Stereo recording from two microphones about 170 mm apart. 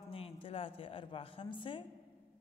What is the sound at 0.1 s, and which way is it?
A woman's voice, 35° left (ahead or behind).